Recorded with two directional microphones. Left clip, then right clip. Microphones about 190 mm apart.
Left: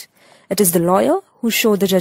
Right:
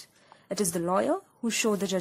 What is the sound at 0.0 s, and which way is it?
Speech, 45° left (ahead or behind).